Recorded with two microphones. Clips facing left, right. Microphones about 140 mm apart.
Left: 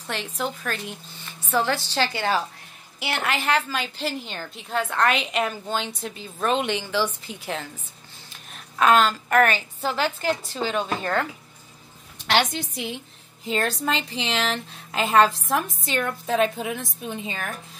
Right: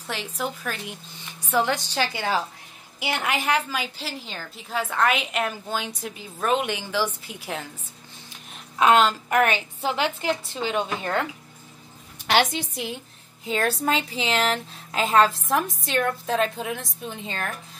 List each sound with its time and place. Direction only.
0.0 s a woman's voice: 10° right (ahead or behind)
8.7 s a woman's voice: 20° right (ahead or behind)
12.3 s a woman's voice: 5° right (ahead or behind)